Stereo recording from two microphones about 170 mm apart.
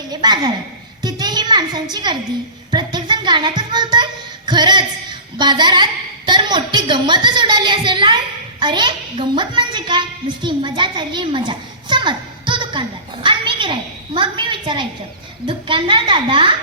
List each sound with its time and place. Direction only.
0.1 s a woman's voice: 25° right (ahead or behind)
1.0 s a sound: 25° right (ahead or behind)
2.7 s music: 25° right (ahead or behind)
5.4 s a woman's voice: 25° right (ahead or behind)